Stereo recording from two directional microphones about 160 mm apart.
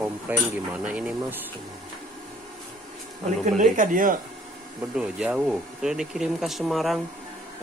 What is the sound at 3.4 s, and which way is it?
Speech, 50° right (ahead or behind).